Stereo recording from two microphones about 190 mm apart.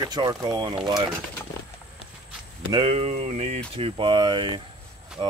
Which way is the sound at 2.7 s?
30° right (ahead or behind).